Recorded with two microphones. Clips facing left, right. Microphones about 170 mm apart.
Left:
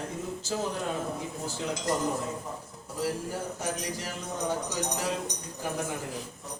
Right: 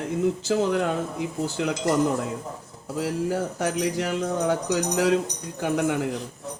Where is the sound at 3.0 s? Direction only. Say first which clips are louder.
Right 6 dB; 70° right (ahead or behind).